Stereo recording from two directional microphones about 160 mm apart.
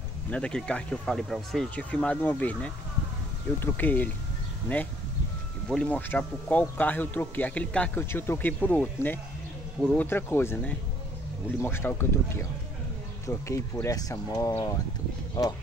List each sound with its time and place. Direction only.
0.3 s speech: 5° left (ahead or behind)
10.0 s speech: 15° left (ahead or behind)